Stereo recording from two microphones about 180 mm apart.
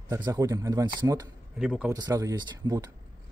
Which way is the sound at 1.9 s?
20° right (ahead or behind).